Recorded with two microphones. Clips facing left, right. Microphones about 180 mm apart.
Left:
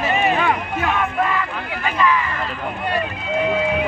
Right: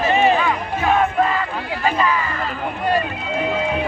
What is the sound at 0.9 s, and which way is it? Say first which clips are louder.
Crowd: right 3 dB; 35° right (ahead or behind).